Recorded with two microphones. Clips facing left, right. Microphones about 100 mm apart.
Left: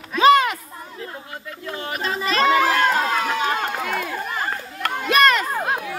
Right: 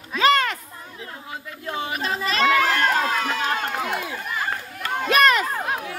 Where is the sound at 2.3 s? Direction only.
35° left (ahead or behind).